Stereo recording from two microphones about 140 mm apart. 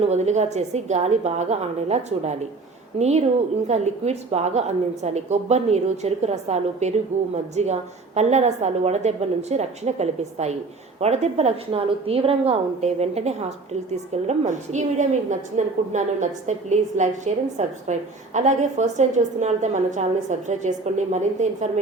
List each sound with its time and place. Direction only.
0.0 s a woman's voice: 55° right (ahead or behind)